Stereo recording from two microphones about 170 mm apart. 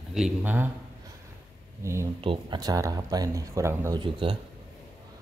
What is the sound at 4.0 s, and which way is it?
Speech, 30° right (ahead or behind).